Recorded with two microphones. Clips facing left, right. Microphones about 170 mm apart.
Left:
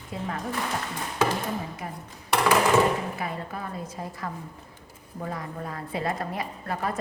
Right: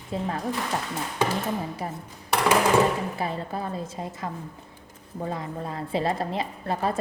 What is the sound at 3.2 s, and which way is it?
A woman's voice, 30° right (ahead or behind).